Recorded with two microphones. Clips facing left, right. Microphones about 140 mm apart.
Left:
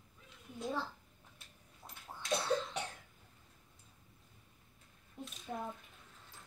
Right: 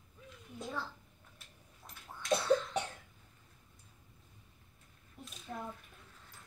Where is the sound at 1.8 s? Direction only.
20° left (ahead or behind).